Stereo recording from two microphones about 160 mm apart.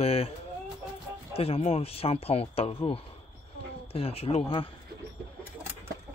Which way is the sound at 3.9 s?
40° left (ahead or behind).